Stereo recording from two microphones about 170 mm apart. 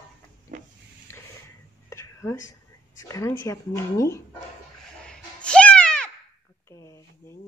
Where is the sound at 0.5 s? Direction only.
50° right (ahead or behind).